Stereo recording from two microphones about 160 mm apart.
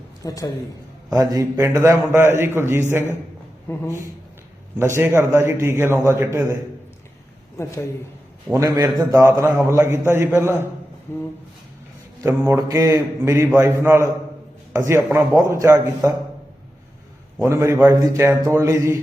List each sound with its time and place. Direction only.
0.2 s a man's voice: 20° left (ahead or behind)
1.1 s a man's voice: 20° right (ahead or behind)
4.8 s a man's voice: 15° right (ahead or behind)
7.6 s a man's voice: 20° left (ahead or behind)
8.5 s a man's voice: 20° right (ahead or behind)
11.1 s a man's voice: 15° left (ahead or behind)
12.2 s a man's voice: 20° right (ahead or behind)
17.3 s a man's voice: 20° right (ahead or behind)